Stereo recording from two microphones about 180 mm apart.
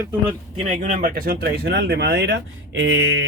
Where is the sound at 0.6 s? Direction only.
45° right (ahead or behind); by 2.3 s 75° right (ahead or behind).